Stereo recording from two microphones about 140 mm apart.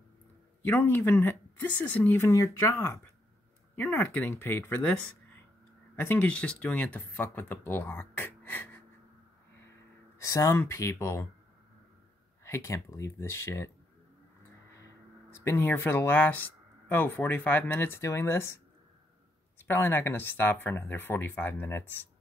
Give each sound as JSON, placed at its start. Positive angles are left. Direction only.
{"t": 0.7, "sound": "speech", "side_deg": 15}
{"t": 5.9, "sound": "speech", "side_deg": 15}
{"t": 10.1, "sound": "speech", "side_deg": 25}
{"t": 12.4, "sound": "speech", "side_deg": 20}
{"t": 15.3, "sound": "speech", "side_deg": 15}
{"t": 19.6, "sound": "speech", "side_deg": 15}